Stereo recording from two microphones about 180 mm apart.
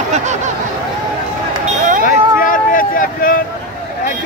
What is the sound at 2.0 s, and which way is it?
Vehicle, 50° left (ahead or behind).